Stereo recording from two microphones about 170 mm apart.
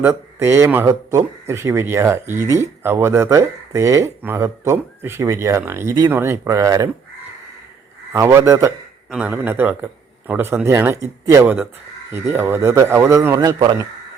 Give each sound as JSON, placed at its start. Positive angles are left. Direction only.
{"t": 0.0, "sound": "speech", "side_deg": -15}
{"t": 8.1, "sound": "speech", "side_deg": -15}
{"t": 9.0, "sound": "speech", "side_deg": -5}